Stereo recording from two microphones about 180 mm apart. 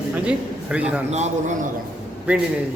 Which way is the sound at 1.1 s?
40° right (ahead or behind).